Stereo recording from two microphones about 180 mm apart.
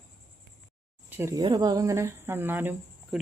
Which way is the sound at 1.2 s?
15° right (ahead or behind).